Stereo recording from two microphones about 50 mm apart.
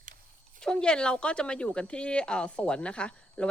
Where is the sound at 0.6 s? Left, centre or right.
Centre.